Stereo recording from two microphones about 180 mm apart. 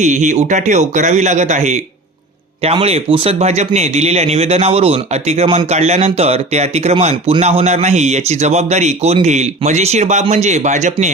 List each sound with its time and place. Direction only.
0.0 s speech: 40° right (ahead or behind)